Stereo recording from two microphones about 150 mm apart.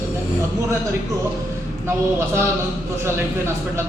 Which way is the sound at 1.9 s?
15° right (ahead or behind).